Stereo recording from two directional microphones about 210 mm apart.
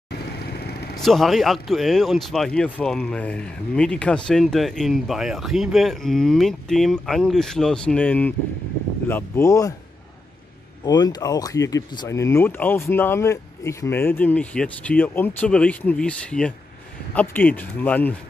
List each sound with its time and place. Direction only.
0.2 s vehicle: 50° left (ahead or behind)
0.9 s speech: centre (ahead or behind)
10.9 s speech: 20° left (ahead or behind)